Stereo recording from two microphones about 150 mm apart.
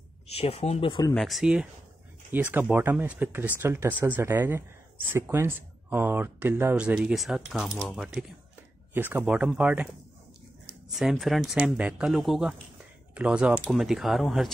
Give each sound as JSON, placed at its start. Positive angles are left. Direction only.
{"t": 0.3, "sound": "speech", "side_deg": 40}
{"t": 1.1, "sound": "speech", "side_deg": 0}